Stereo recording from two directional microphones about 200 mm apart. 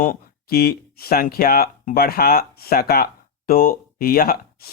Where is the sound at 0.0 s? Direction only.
45° left (ahead or behind).